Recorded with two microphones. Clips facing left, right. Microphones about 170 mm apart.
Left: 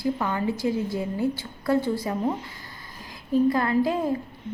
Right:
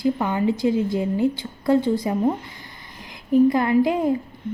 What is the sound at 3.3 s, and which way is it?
Speech, 20° right (ahead or behind).